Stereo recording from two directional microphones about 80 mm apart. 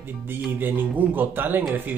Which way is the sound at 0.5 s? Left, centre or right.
Right.